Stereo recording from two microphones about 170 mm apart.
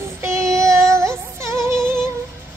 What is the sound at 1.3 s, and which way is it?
Music, 15° right (ahead or behind).